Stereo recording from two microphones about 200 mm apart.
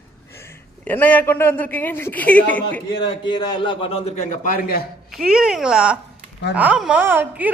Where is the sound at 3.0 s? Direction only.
20° left (ahead or behind).